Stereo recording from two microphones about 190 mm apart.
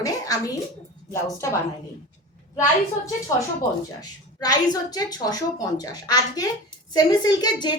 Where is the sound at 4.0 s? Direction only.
20° left (ahead or behind).